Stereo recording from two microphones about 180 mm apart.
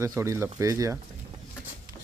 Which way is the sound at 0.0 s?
15° right (ahead or behind).